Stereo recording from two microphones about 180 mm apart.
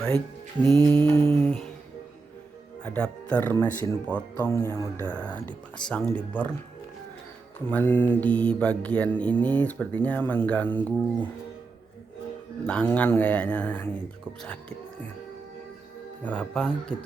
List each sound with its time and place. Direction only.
0.6 s mantra: 25° right (ahead or behind)
1.2 s humming: 30° right (ahead or behind)
2.8 s speech: 5° left (ahead or behind)
7.7 s speech: 10° left (ahead or behind)
12.6 s speech: 10° left (ahead or behind)
16.2 s speech: 10° left (ahead or behind)